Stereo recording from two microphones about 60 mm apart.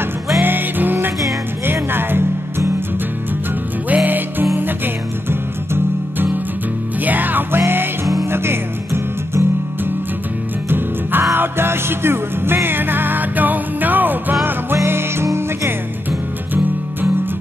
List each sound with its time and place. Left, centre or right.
0.4 s music: right
3.9 s music: right
10.7 s music: right
14.9 s music: right